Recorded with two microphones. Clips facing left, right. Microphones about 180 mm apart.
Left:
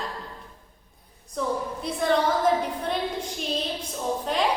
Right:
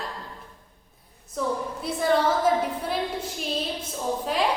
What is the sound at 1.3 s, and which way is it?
A woman's voice, 5° right (ahead or behind).